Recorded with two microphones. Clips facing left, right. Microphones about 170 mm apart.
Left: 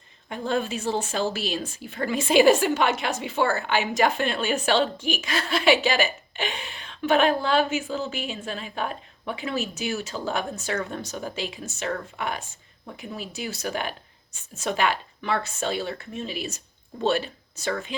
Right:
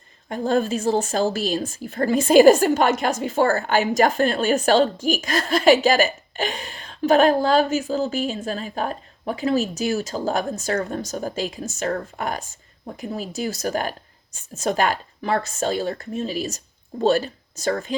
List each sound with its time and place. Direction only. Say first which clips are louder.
0.3 s a woman's voice: right 5 dB; 40° right (ahead or behind)